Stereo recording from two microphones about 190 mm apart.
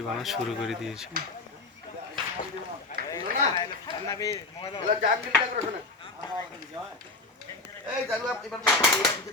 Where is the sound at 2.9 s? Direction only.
40° left (ahead or behind).